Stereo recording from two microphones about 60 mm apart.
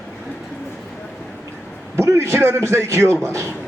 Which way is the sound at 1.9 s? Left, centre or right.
Right.